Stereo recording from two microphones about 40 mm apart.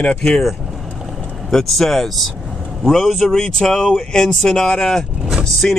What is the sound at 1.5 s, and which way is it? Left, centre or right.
Speech, centre.